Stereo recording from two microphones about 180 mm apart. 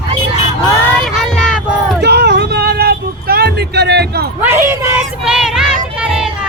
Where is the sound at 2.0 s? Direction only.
65° right (ahead or behind).